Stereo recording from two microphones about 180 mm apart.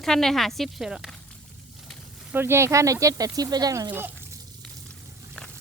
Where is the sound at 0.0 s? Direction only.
5° left (ahead or behind).